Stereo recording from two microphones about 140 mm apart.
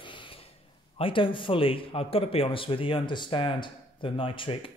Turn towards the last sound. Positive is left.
turn(degrees=40)  # may be behind; listen again after turning